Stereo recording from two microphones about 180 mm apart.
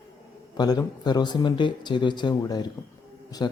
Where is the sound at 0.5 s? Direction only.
20° left (ahead or behind).